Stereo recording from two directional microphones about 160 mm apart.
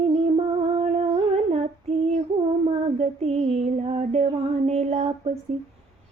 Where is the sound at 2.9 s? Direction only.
40° right (ahead or behind).